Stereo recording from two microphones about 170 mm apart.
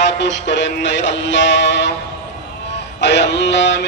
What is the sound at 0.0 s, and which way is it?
Music, 90° left.